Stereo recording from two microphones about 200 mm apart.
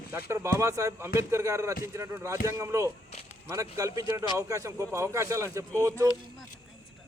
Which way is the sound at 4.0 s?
15° right (ahead or behind).